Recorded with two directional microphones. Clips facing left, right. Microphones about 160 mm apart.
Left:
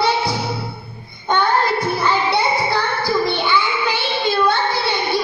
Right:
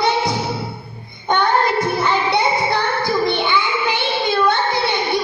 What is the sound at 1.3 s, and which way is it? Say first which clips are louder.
Child singing: right 1 dB; 20° right (ahead or behind).